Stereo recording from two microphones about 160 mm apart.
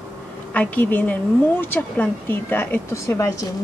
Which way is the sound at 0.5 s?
10° left (ahead or behind).